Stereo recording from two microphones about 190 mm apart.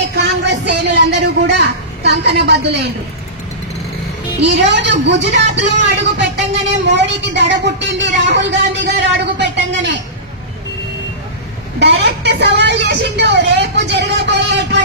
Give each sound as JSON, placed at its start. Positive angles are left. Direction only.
{"t": 0.1, "sound": "speech", "side_deg": -65}
{"t": 4.4, "sound": "speech", "side_deg": -65}
{"t": 11.8, "sound": "speech", "side_deg": -60}